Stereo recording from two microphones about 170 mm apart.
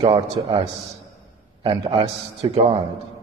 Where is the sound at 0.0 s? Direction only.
30° right (ahead or behind).